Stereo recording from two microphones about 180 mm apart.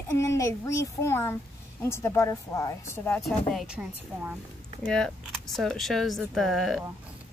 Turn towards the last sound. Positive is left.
turn(degrees=0)  # may be behind; listen again after turning